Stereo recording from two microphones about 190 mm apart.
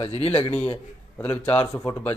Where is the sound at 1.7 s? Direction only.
15° left (ahead or behind).